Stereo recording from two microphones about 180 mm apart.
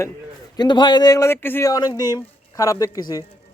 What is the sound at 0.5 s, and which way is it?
Speech, 25° left (ahead or behind).